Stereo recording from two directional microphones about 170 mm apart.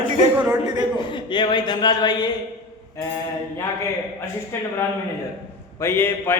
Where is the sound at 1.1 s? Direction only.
30° left (ahead or behind).